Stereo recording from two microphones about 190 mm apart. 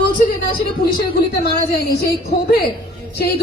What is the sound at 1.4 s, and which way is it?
A woman's voice, 55° left (ahead or behind).